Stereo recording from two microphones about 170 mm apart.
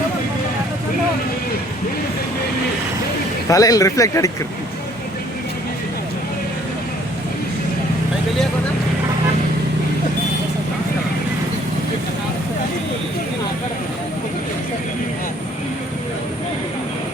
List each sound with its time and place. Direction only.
3.5 s speech: 20° left (ahead or behind)